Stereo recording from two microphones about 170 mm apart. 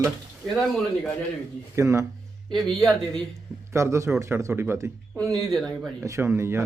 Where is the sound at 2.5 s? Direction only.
Centre (ahead or behind).